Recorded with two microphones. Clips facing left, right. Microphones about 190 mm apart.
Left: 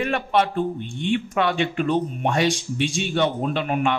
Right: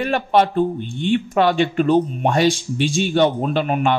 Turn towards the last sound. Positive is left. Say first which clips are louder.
# right 4 dB
turn(degrees=-35)  # may be behind; listen again after turning